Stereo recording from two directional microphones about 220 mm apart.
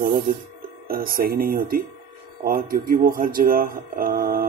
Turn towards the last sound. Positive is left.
turn(degrees=-40)  # may be behind; listen again after turning